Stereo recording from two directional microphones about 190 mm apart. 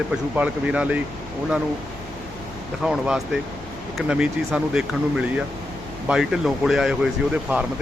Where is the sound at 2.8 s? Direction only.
5° right (ahead or behind).